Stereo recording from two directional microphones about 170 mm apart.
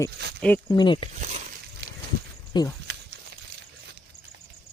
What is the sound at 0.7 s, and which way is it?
Speech, 25° left (ahead or behind).